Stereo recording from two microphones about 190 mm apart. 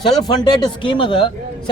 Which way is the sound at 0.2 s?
20° left (ahead or behind).